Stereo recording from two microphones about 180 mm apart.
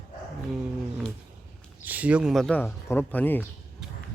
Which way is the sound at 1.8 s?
10° right (ahead or behind).